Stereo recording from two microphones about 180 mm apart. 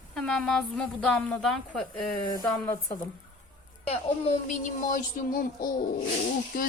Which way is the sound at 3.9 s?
40° left (ahead or behind).